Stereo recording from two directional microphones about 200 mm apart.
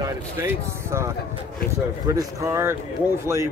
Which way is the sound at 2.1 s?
15° right (ahead or behind).